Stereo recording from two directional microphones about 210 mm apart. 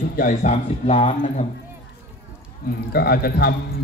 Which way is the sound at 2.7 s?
50° left (ahead or behind).